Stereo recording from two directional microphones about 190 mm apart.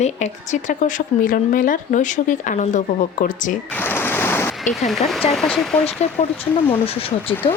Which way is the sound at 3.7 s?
10° left (ahead or behind).